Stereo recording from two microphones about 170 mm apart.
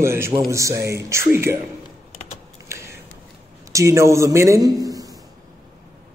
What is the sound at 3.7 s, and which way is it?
A man's voice, 15° right (ahead or behind).